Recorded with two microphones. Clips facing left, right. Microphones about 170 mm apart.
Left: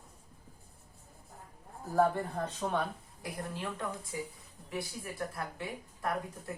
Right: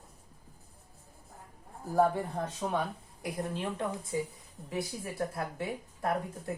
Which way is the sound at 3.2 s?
20° right (ahead or behind).